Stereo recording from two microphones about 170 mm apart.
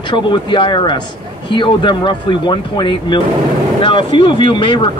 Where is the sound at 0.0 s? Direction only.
30° left (ahead or behind).